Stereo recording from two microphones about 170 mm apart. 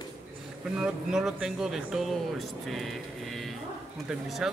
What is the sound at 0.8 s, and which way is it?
Speech, 5° right (ahead or behind).